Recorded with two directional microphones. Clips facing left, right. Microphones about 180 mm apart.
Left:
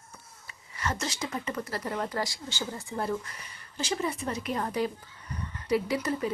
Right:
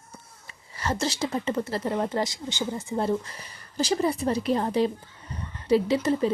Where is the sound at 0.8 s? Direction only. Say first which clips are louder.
Right 5 dB; 30° right (ahead or behind).